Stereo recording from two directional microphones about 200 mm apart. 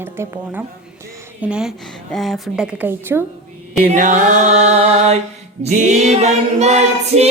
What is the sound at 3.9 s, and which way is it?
Female singing, 40° right (ahead or behind).